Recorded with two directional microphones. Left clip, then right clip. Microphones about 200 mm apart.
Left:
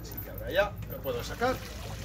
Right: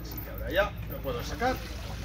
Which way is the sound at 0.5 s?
20° left (ahead or behind).